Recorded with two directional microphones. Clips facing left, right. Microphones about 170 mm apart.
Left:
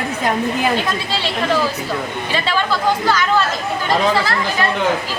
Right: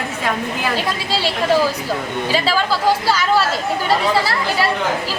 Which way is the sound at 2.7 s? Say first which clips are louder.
Left 1 dB; 10° right (ahead or behind).